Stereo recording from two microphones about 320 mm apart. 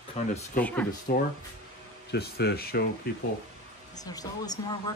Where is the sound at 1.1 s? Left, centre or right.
Left.